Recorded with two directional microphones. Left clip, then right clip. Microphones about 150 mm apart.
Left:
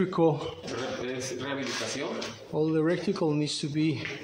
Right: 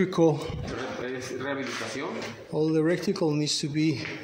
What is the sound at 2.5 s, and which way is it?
Speech, 20° right (ahead or behind).